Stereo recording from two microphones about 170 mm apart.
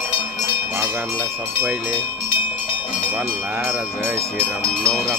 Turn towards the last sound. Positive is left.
turn(degrees=-10)  # may be behind; listen again after turning